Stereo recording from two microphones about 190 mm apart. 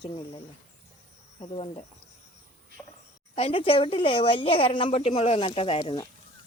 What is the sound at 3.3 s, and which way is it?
A woman's voice, 30° left (ahead or behind).